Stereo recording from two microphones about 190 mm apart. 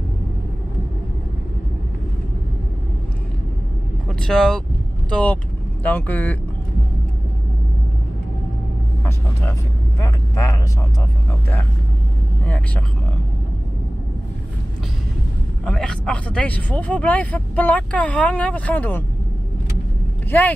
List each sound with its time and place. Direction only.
4.1 s speech: 5° left (ahead or behind)
10.0 s speech: 15° left (ahead or behind)
12.4 s speech: 5° left (ahead or behind)
15.6 s speech: 5° left (ahead or behind)